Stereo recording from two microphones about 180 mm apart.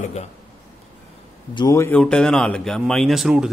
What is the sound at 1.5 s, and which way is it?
A man's voice, 20° left (ahead or behind).